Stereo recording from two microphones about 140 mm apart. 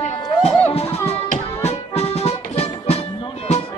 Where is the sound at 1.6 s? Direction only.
45° left (ahead or behind).